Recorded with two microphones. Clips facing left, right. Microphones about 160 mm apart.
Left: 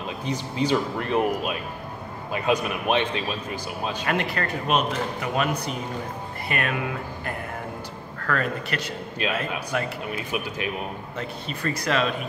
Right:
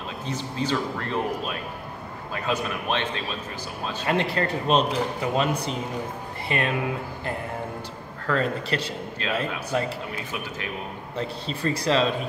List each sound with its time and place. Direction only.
0.2 s speech: 15° left (ahead or behind)
4.0 s speech: 25° right (ahead or behind)
8.3 s speech: 25° right (ahead or behind)
9.2 s speech: 15° left (ahead or behind)
11.1 s speech: 30° right (ahead or behind)